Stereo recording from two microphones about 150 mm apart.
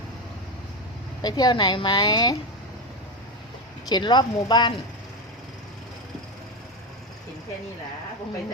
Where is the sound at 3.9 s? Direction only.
30° left (ahead or behind).